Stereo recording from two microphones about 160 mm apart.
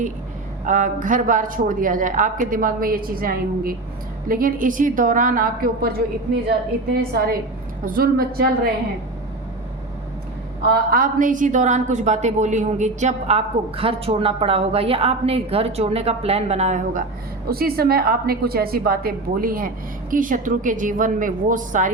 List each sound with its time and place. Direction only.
0.6 s a woman's voice: 50° right (ahead or behind)
6.5 s a woman's voice: 75° right (ahead or behind)
10.9 s a woman's voice: 55° right (ahead or behind)
17.5 s a woman's voice: 70° right (ahead or behind); by 21.8 s 55° right (ahead or behind)